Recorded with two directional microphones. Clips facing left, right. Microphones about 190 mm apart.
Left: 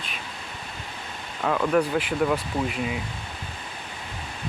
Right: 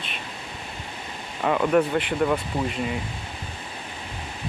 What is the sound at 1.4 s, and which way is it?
Speech, centre (ahead or behind).